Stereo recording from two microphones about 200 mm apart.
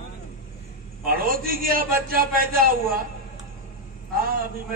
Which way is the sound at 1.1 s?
45° right (ahead or behind).